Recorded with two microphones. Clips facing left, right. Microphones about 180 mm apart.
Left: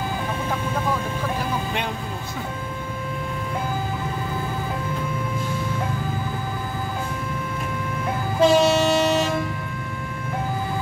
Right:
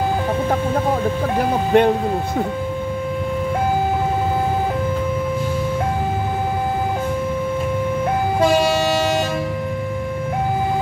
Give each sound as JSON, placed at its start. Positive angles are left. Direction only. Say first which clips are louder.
{"t": 1.4, "sound": "music", "louder": "right 11 dB", "side_deg": -55}